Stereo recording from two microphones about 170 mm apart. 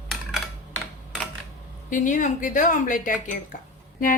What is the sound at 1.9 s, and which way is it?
A woman's voice, 50° left (ahead or behind).